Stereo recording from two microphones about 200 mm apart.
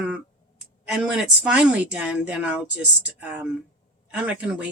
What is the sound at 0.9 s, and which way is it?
Speech, 5° right (ahead or behind).